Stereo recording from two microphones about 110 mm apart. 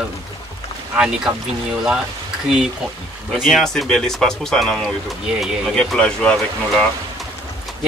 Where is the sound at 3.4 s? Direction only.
5° left (ahead or behind).